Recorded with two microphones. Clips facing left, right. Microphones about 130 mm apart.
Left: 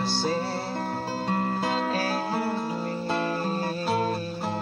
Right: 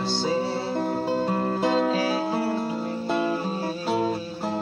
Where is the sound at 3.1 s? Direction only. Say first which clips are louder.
Right 3 dB; 5° right (ahead or behind).